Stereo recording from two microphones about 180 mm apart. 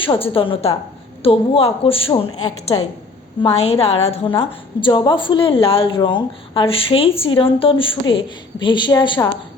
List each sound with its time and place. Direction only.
0.0 s a woman's voice: 30° left (ahead or behind)
3.4 s a woman's voice: 35° left (ahead or behind)